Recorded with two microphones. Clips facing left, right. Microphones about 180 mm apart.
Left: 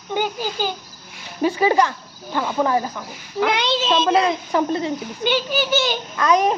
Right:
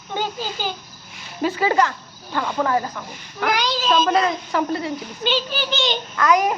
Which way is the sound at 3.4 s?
25° left (ahead or behind).